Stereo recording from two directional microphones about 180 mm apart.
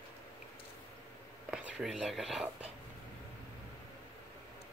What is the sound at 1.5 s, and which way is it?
Speech, 5° right (ahead or behind).